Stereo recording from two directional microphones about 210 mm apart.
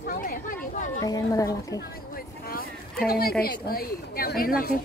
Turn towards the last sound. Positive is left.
turn(degrees=45)  # may be behind; listen again after turning